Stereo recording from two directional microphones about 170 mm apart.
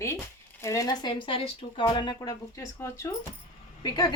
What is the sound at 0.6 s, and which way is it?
Speech, 20° left (ahead or behind).